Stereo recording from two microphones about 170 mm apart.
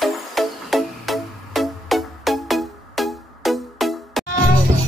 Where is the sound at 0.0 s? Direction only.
Centre (ahead or behind).